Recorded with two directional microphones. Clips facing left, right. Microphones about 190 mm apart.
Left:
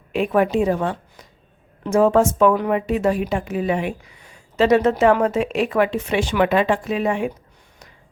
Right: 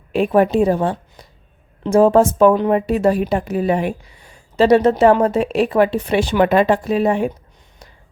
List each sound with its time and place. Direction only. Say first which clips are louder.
0.1 s speech: right 4 dB; 35° right (ahead or behind)